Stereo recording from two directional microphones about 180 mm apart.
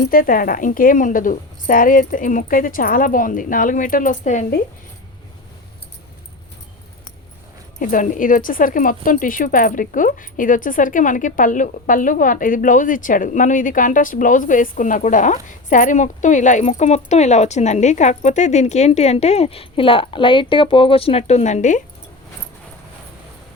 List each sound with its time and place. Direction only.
0.0 s speech: 50° left (ahead or behind)
7.8 s speech: 50° left (ahead or behind)